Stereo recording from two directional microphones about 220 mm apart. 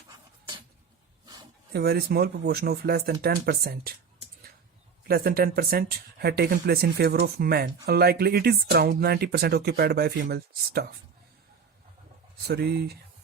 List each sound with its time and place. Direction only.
1.7 s speech: 45° right (ahead or behind)
5.0 s speech: 45° right (ahead or behind)
12.5 s speech: 45° right (ahead or behind)